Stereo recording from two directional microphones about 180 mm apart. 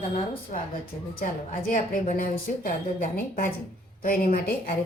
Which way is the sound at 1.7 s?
50° left (ahead or behind).